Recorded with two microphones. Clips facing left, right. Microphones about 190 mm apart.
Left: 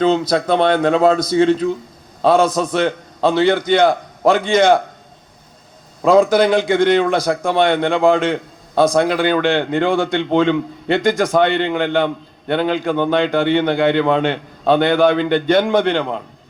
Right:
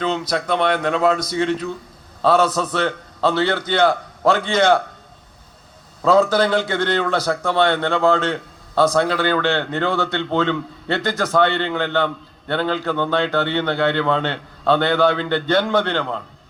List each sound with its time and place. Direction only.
0.0 s speech: 30° left (ahead or behind)
2.2 s a man's voice: 15° left (ahead or behind)
6.0 s a man's voice: 10° left (ahead or behind)